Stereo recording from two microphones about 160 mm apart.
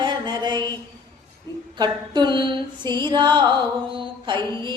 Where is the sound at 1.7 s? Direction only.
25° right (ahead or behind).